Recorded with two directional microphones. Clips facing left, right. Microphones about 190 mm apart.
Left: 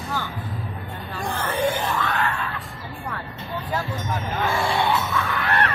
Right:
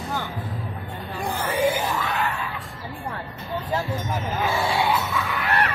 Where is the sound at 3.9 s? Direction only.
5° right (ahead or behind).